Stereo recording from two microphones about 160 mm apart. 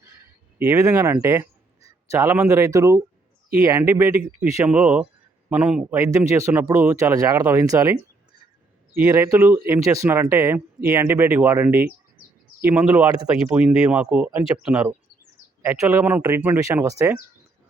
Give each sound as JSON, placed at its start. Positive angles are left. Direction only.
{"t": 0.0, "sound": "a sound", "side_deg": -15}
{"t": 3.6, "sound": "speech", "side_deg": -20}
{"t": 6.0, "sound": "speech", "side_deg": -20}
{"t": 9.0, "sound": "speech", "side_deg": -15}